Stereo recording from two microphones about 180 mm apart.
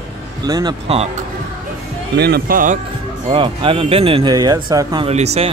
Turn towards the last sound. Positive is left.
turn(degrees=-35)  # may be behind; listen again after turning